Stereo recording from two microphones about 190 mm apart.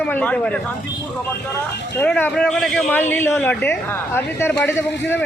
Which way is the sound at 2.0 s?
10° left (ahead or behind).